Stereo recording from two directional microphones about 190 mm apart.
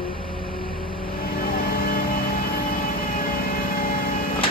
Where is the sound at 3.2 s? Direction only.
50° left (ahead or behind).